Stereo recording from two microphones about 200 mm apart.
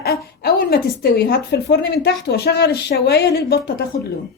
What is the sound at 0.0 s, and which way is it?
A woman's voice, 50° left (ahead or behind).